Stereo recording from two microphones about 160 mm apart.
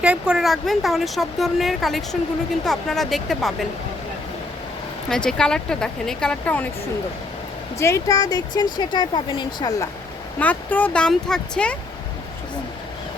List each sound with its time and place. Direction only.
0.0 s speech: 5° right (ahead or behind)
5.0 s speech: 5° left (ahead or behind)
7.8 s speech: 15° left (ahead or behind)
10.4 s speech: 10° left (ahead or behind)